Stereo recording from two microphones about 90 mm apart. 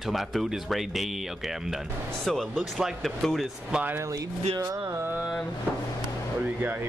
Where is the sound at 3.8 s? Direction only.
30° right (ahead or behind).